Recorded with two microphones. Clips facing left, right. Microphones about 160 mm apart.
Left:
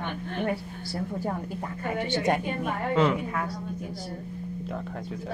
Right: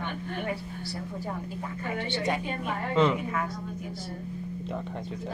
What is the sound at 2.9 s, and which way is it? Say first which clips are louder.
Speech: even; 5° left (ahead or behind).